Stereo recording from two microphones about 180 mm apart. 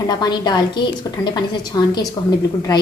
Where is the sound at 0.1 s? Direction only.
25° left (ahead or behind).